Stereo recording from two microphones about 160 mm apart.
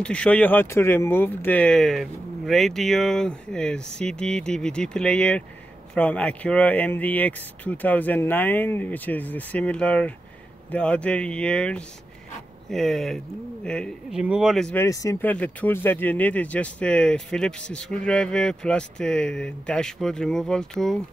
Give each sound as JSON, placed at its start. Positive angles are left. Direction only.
{"t": 0.0, "sound": "speech", "side_deg": 5}
{"t": 14.8, "sound": "speech", "side_deg": 20}